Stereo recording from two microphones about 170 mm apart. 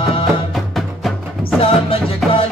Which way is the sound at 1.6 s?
35° left (ahead or behind).